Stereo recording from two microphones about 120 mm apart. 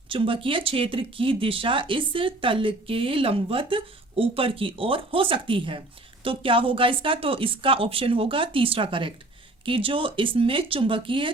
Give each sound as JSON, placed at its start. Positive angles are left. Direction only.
{"t": 0.1, "sound": "speech", "side_deg": -45}